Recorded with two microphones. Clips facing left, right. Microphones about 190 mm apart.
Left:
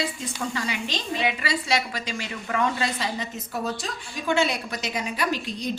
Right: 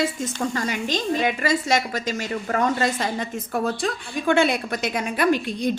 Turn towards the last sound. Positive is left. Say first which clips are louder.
# right 7 dB
turn(degrees=-55)  # may be behind; listen again after turning